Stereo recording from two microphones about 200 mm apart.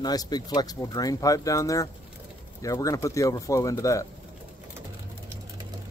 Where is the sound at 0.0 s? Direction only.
20° left (ahead or behind).